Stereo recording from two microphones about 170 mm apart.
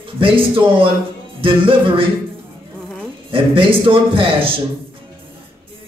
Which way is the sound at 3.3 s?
30° right (ahead or behind).